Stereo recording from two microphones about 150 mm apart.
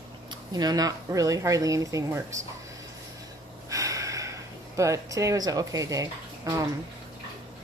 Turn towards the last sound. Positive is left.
turn(degrees=-20)  # may be behind; listen again after turning